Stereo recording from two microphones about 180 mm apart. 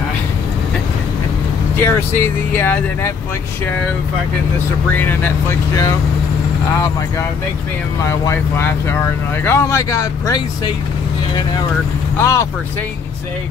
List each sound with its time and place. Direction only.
1.8 s speech: 10° left (ahead or behind)
4.9 s speech: 10° left (ahead or behind)
8.1 s speech: 15° left (ahead or behind)
12.2 s speech: 15° left (ahead or behind)